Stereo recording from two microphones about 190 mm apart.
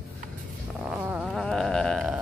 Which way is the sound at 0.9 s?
10° right (ahead or behind).